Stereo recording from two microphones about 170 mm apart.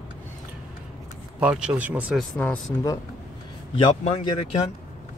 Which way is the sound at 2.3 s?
10° left (ahead or behind).